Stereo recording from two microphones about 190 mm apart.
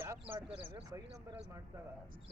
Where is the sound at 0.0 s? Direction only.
15° right (ahead or behind).